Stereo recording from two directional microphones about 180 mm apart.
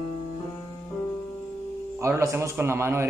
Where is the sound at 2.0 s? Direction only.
15° right (ahead or behind).